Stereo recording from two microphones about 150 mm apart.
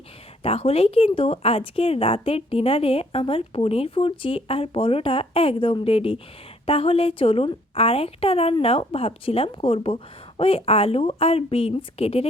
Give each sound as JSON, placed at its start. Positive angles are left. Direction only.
{"t": 0.4, "sound": "speech", "side_deg": 40}